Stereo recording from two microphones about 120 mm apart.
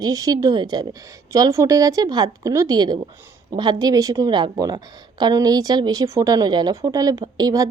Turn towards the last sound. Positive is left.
turn(degrees=-30)  # may be behind; listen again after turning